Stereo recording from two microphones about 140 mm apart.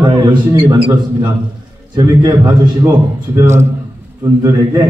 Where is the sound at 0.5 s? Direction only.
35° right (ahead or behind).